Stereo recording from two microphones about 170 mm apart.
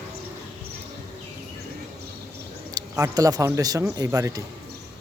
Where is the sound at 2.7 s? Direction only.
20° right (ahead or behind).